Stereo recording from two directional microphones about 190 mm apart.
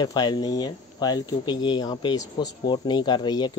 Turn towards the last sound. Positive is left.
turn(degrees=25)  # may be behind; listen again after turning